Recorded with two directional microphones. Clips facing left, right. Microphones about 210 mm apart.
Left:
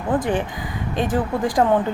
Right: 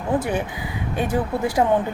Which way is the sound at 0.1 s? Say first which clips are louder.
Left 1 dB; 10° right (ahead or behind).